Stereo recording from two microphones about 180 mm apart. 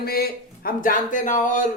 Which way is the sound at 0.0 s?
55° left (ahead or behind).